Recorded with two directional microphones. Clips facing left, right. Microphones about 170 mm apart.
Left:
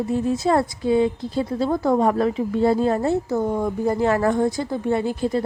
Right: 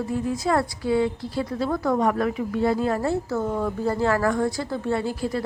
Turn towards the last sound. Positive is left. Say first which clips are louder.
# left 4 dB
turn(degrees=20)  # may be behind; listen again after turning